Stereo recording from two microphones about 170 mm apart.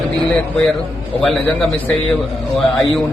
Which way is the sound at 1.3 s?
5° left (ahead or behind).